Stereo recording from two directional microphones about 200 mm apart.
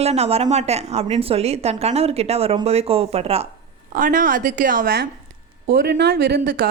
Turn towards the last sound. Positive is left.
turn(degrees=-45)  # may be behind; listen again after turning